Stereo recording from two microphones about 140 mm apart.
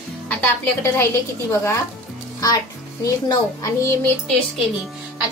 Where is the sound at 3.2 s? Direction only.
25° left (ahead or behind).